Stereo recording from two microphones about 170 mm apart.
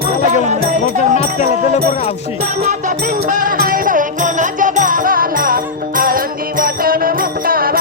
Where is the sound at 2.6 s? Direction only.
50° right (ahead or behind).